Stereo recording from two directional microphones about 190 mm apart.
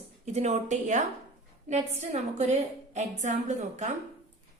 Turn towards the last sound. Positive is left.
turn(degrees=-40)  # may be behind; listen again after turning